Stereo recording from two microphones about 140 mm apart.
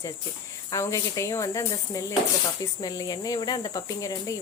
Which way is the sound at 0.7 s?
20° left (ahead or behind).